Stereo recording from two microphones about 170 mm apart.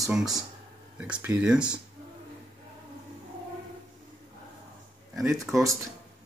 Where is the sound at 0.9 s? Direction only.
10° right (ahead or behind).